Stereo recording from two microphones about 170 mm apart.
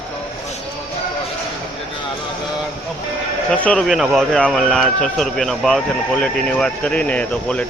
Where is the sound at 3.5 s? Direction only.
5° left (ahead or behind).